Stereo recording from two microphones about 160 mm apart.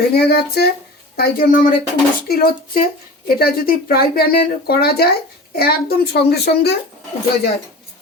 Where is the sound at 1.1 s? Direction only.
70° left (ahead or behind).